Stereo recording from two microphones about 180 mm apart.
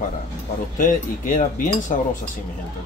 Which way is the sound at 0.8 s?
45° left (ahead or behind).